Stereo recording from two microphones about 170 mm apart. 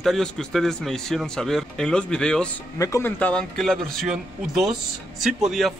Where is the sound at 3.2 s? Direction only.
5° left (ahead or behind).